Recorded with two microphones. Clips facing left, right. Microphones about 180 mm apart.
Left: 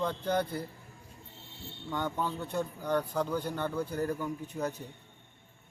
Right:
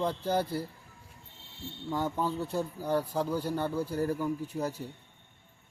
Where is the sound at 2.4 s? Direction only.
5° right (ahead or behind).